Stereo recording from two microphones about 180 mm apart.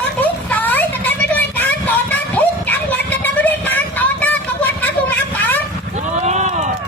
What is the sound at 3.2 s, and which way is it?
Music, 10° left (ahead or behind).